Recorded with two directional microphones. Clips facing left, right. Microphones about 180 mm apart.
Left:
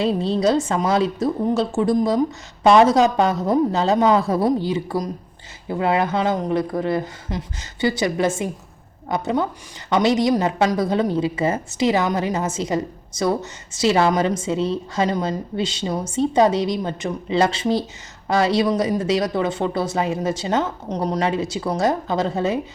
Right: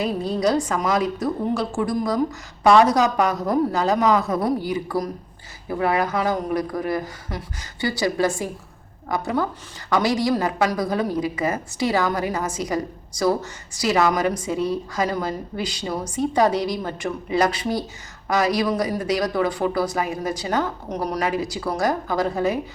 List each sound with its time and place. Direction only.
0.0 s speech: 25° left (ahead or behind)